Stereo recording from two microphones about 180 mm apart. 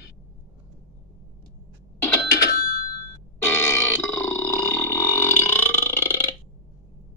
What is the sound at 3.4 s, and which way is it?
Burping, 15° left (ahead or behind).